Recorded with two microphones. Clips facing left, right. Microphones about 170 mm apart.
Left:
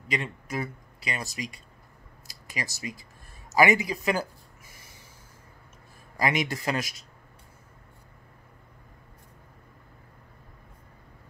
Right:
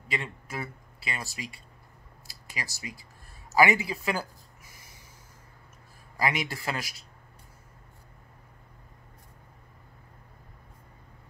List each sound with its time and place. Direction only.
0.1 s speech: 15° left (ahead or behind)
2.2 s a sound: 20° left (ahead or behind)
3.5 s speech: 20° left (ahead or behind)
6.2 s speech: 20° left (ahead or behind)